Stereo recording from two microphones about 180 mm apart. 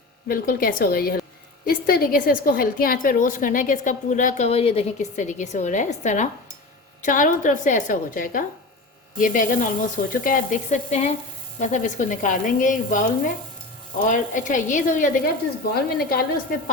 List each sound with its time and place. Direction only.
0.3 s a woman's voice: 55° left (ahead or behind)